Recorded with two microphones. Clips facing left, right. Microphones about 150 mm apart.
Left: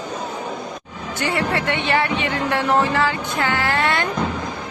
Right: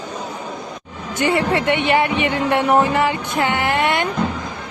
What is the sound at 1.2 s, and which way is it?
Speech, 20° right (ahead or behind).